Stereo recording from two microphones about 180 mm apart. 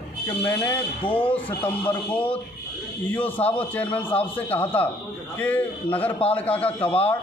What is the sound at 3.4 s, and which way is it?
Speech, 30° left (ahead or behind).